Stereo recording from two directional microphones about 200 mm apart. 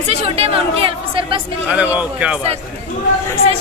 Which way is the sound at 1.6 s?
5° right (ahead or behind).